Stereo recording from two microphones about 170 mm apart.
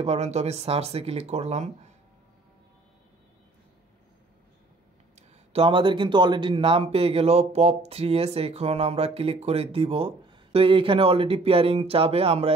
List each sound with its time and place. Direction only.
0.0 s speech: 40° right (ahead or behind)
5.5 s speech: 30° right (ahead or behind)